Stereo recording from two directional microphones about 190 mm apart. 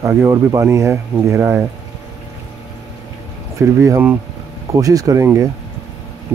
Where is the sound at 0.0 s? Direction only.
15° right (ahead or behind).